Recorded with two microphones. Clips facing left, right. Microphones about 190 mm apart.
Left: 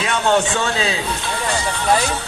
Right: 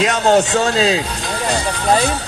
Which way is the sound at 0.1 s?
40° right (ahead or behind).